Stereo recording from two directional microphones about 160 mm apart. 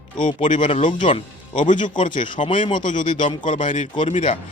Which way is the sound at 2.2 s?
30° left (ahead or behind).